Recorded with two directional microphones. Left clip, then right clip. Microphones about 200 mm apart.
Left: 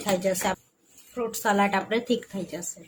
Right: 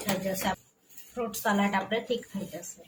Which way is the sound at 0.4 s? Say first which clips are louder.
Left 3 dB; 55° left (ahead or behind).